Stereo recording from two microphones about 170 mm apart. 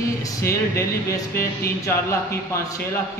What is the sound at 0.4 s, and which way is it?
Speech, 15° left (ahead or behind).